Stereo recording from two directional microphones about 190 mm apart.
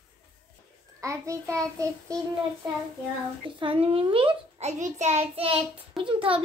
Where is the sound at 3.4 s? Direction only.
30° right (ahead or behind).